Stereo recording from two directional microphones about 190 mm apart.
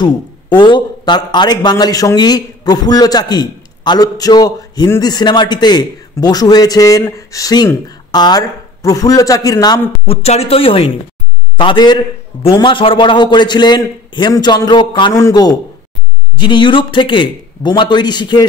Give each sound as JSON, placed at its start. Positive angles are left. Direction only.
{"t": 0.0, "sound": "a man's voice", "side_deg": 25}
{"t": 10.2, "sound": "a man's voice", "side_deg": 35}